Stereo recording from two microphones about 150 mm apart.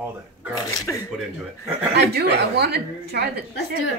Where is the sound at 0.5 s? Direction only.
25° left (ahead or behind).